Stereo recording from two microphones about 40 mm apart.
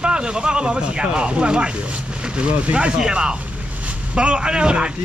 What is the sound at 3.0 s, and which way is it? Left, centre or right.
Speech, right.